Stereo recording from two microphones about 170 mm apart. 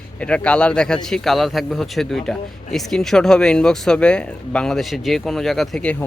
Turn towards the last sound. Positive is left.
turn(degrees=5)  # may be behind; listen again after turning